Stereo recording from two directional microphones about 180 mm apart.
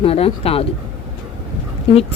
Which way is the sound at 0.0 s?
30° left (ahead or behind).